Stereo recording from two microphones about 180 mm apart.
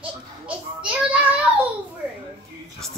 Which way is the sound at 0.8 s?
5° right (ahead or behind).